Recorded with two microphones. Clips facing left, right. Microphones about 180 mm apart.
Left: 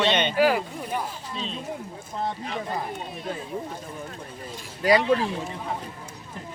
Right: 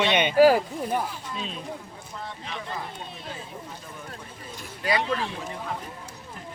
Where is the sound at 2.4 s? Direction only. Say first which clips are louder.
Left 5 dB; 45° left (ahead or behind).